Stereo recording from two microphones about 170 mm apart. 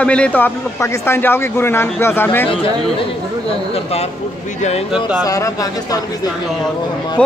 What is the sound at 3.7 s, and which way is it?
Speech, 35° left (ahead or behind).